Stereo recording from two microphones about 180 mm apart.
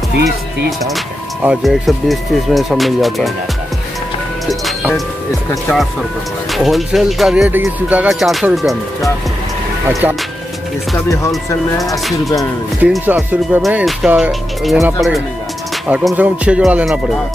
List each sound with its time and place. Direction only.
0.7 s speech: centre (ahead or behind)
4.5 s speech: centre (ahead or behind)
11.0 s speech: 15° left (ahead or behind)
12.8 s speech: 10° right (ahead or behind)